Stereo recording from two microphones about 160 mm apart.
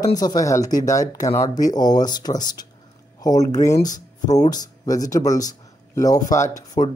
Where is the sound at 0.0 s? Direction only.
25° left (ahead or behind).